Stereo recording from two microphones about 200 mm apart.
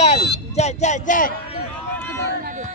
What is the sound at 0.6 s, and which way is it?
Speech, 35° left (ahead or behind).